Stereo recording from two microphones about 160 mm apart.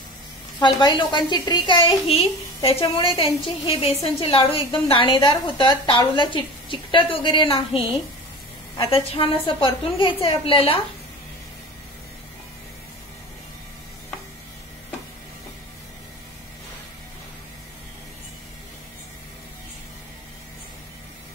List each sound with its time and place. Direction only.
0.6 s a woman's voice: 30° left (ahead or behind)
8.9 s a woman's voice: 35° left (ahead or behind)